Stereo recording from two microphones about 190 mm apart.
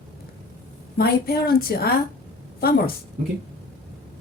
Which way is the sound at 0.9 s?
55° left (ahead or behind).